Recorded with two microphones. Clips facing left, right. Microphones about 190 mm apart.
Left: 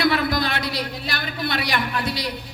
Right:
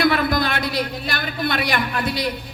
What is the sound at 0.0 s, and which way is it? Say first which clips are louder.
A man's voice: right 2 dB; 50° right (ahead or behind).